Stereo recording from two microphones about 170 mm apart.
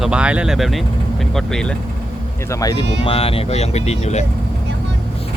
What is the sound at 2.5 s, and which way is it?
Speech, 20° left (ahead or behind).